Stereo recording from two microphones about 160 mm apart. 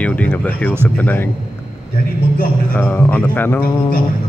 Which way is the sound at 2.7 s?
10° left (ahead or behind).